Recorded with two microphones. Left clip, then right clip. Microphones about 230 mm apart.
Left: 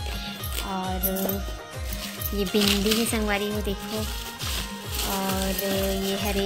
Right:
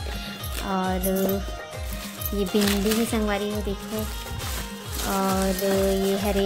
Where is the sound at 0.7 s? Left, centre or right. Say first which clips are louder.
Right 5 dB; right.